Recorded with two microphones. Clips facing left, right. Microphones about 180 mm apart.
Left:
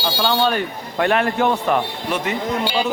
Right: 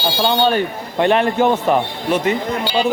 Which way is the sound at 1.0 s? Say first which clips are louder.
Right 3 dB; 25° right (ahead or behind).